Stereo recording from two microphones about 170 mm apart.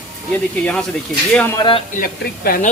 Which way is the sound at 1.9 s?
55° left (ahead or behind).